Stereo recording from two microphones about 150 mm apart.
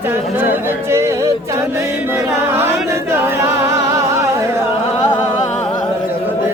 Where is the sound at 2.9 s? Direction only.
15° right (ahead or behind).